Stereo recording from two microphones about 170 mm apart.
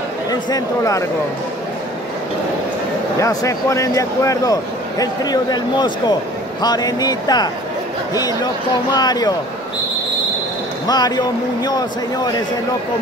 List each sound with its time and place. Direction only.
0.3 s speech: 20° left (ahead or behind)
3.2 s speech: 20° left (ahead or behind)
10.9 s speech: 25° left (ahead or behind)